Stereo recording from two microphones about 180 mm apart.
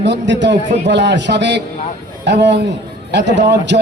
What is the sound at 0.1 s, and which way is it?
A man's voice, 80° right.